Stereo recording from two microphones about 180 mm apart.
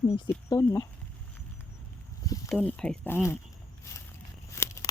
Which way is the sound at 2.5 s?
5° left (ahead or behind).